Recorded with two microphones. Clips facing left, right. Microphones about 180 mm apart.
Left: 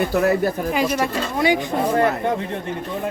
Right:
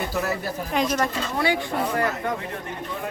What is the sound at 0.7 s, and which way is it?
Speech, 5° left (ahead or behind).